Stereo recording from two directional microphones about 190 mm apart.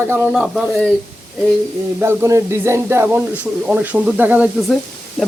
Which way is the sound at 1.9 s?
15° right (ahead or behind).